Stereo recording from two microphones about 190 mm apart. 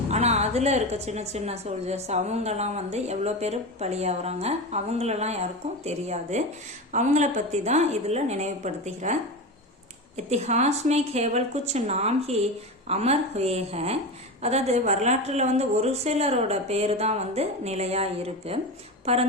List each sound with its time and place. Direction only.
0.1 s a woman's voice: 35° right (ahead or behind)
10.2 s a woman's voice: 35° right (ahead or behind)